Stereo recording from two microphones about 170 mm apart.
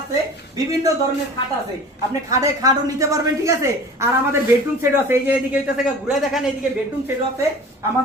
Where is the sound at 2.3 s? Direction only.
20° right (ahead or behind); by 6.5 s centre (ahead or behind).